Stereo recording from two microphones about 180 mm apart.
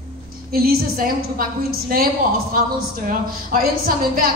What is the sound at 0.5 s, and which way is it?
A woman's voice, 55° right (ahead or behind).